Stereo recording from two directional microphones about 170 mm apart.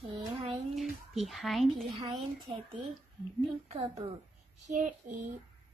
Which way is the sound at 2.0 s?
30° right (ahead or behind).